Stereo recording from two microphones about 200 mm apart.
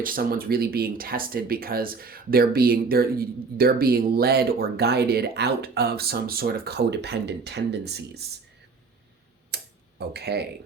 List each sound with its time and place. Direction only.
0.0 s speech: 45° right (ahead or behind)
9.5 s a sound: 55° right (ahead or behind)
10.1 s speech: 55° right (ahead or behind)